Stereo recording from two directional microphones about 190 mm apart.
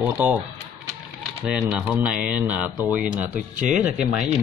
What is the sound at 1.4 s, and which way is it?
Speech, 5° right (ahead or behind).